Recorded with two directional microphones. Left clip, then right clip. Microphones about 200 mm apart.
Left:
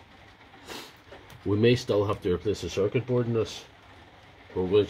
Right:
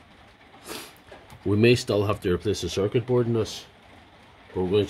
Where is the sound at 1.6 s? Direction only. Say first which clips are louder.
Right 2 dB; 30° right (ahead or behind).